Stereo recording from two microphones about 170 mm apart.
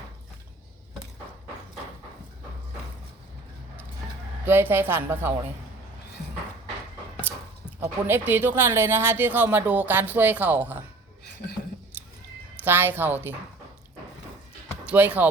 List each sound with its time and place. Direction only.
4.4 s speech: 10° right (ahead or behind)
7.3 s a sound: 10° right (ahead or behind)
7.8 s speech: 15° right (ahead or behind)
11.9 s a sound: 10° right (ahead or behind)
12.6 s speech: 10° right (ahead or behind)
14.8 s speech: 10° right (ahead or behind)